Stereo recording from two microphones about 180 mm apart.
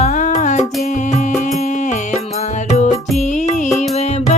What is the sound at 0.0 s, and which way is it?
Music, 45° left (ahead or behind).